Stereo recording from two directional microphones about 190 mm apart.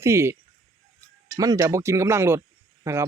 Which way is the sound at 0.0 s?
15° right (ahead or behind).